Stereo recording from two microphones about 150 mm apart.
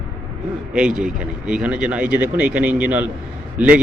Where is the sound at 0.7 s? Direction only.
5° right (ahead or behind).